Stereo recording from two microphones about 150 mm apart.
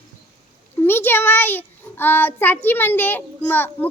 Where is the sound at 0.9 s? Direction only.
15° left (ahead or behind).